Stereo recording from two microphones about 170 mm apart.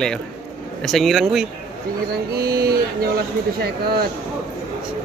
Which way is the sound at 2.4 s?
65° right (ahead or behind).